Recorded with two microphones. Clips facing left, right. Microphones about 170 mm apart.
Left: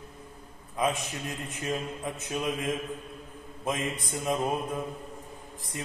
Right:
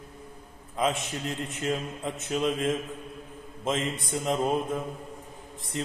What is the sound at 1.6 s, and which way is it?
A man's voice, 25° right (ahead or behind).